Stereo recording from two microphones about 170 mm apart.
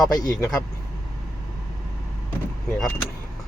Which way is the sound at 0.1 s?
20° left (ahead or behind).